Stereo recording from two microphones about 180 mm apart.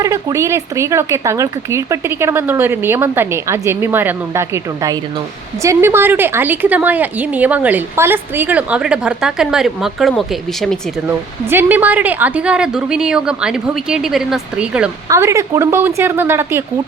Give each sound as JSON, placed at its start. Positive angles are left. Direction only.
{"t": 0.0, "sound": "a woman's voice", "side_deg": -20}
{"t": 11.4, "sound": "a woman's voice", "side_deg": -10}
{"t": 15.1, "sound": "a woman's voice", "side_deg": -15}